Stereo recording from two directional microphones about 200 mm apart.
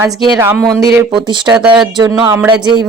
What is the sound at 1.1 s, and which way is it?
Speech, 25° right (ahead or behind).